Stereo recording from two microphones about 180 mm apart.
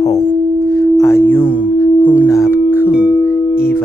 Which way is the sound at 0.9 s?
15° left (ahead or behind).